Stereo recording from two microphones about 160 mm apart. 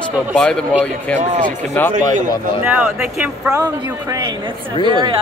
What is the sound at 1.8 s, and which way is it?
Speech, 10° left (ahead or behind).